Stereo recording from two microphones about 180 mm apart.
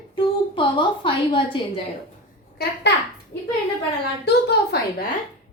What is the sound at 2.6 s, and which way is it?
Speech, 60° left (ahead or behind).